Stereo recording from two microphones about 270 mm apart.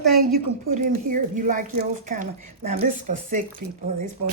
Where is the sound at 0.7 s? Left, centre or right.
Right.